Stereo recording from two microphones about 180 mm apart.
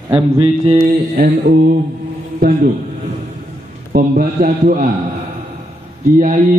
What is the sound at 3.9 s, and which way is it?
Speech, 50° right (ahead or behind).